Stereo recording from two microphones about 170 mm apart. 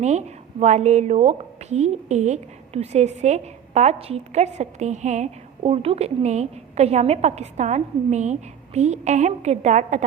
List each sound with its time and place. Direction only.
0.0 s a woman's voice: 40° right (ahead or behind)